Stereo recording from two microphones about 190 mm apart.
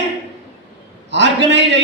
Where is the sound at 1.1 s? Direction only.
65° right (ahead or behind).